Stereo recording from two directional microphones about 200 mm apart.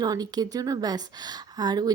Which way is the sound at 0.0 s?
20° right (ahead or behind).